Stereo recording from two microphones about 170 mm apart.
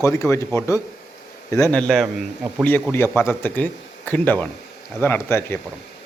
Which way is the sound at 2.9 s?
15° left (ahead or behind).